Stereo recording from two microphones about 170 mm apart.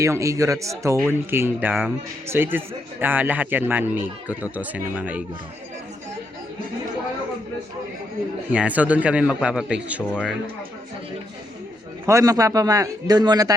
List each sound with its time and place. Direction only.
0.0 s speech: 20° right (ahead or behind)
8.5 s speech: 10° right (ahead or behind)
12.0 s a man's voice: 20° right (ahead or behind)